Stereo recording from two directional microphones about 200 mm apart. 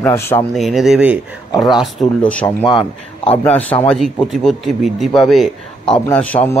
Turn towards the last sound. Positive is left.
turn(degrees=10)  # may be behind; listen again after turning